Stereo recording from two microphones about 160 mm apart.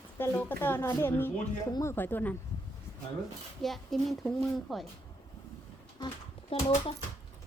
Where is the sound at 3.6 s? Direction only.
Centre (ahead or behind).